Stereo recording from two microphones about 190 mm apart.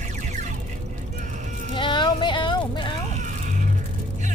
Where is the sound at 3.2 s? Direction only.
40° right (ahead or behind).